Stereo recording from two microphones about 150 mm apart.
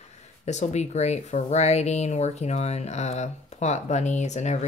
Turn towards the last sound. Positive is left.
turn(degrees=50)  # may be behind; listen again after turning